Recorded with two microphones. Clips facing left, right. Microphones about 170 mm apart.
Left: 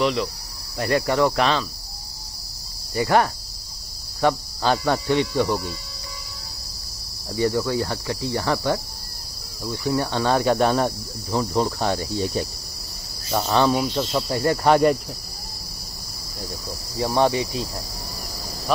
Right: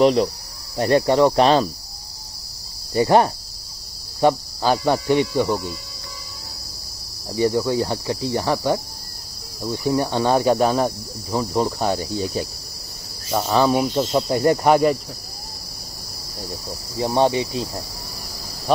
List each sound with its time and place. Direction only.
0.0 s cricket: 40° right (ahead or behind)
0.7 s speech: 30° right (ahead or behind)
1.4 s cricket: 40° right (ahead or behind)
2.9 s speech: 25° right (ahead or behind)
4.2 s speech: 15° right (ahead or behind)
7.2 s speech: 20° right (ahead or behind)
10.5 s speech: 5° right (ahead or behind); by 14.7 s 20° right (ahead or behind)
14.7 s speech: centre (ahead or behind)
16.9 s speech: 20° right (ahead or behind)